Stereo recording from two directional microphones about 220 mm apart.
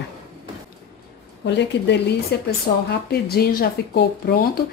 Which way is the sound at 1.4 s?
50° left (ahead or behind).